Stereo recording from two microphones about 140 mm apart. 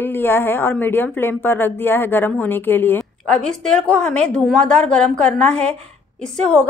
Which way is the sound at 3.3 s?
5° left (ahead or behind).